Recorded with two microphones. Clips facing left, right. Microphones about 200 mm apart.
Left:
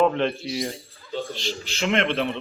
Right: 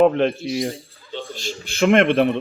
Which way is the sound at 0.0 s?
50° right (ahead or behind).